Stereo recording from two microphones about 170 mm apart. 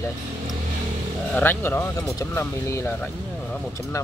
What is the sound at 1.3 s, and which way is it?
Speech, 10° left (ahead or behind).